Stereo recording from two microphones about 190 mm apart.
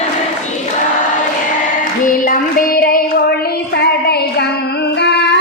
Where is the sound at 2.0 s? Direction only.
45° left (ahead or behind).